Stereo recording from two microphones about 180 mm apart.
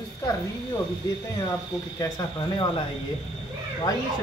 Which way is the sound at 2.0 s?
25° left (ahead or behind).